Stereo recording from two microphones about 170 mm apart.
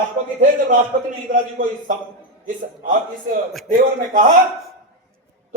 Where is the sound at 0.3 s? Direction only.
55° right (ahead or behind).